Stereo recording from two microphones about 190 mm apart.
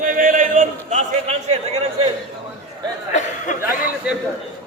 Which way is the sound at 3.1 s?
40° left (ahead or behind).